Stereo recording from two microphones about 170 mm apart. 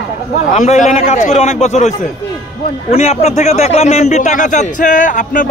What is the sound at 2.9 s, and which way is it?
A man's voice, 40° left (ahead or behind).